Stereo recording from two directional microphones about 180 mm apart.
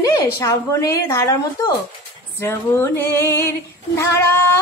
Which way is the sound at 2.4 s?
15° left (ahead or behind).